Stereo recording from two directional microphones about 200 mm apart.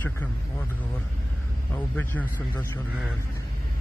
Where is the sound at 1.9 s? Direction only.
10° left (ahead or behind).